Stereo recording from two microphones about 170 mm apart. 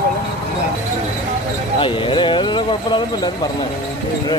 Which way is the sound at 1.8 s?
30° left (ahead or behind).